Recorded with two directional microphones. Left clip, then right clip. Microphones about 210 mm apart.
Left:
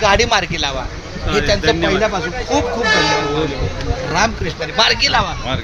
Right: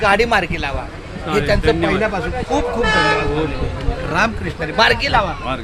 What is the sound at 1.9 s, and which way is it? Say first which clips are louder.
Speech: left 2 dB; 15° left (ahead or behind).